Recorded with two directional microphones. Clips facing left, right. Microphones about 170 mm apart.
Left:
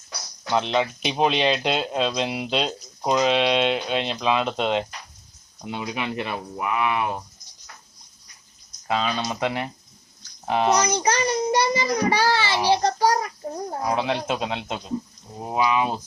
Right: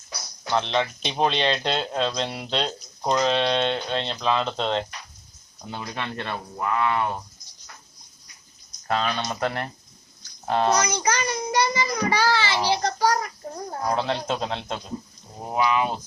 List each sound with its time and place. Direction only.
0.5 s speech: 10° left (ahead or behind)
8.9 s speech: 5° left (ahead or behind)
10.8 s a child's voice: 35° left (ahead or behind)
12.6 s child singing: 25° left (ahead or behind)
13.7 s speech: 10° left (ahead or behind)